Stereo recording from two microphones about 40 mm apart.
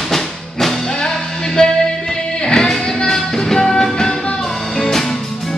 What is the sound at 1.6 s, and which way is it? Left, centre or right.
Music, left.